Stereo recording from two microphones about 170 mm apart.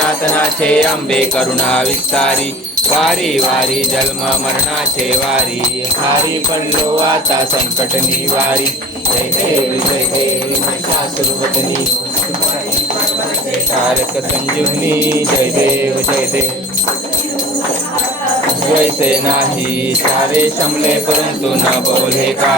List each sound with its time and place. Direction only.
0.7 s jingle bell: 5° left (ahead or behind)
14.8 s music: 15° right (ahead or behind)